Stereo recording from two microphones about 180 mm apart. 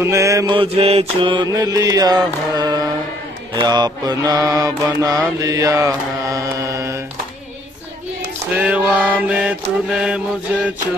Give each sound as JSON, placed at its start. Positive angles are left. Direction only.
{"t": 0.0, "sound": "mantra", "side_deg": -15}
{"t": 0.6, "sound": "mantra", "side_deg": -35}
{"t": 8.5, "sound": "mantra", "side_deg": -5}